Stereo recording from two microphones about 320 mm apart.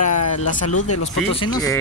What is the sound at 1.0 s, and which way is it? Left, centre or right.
Speech, centre.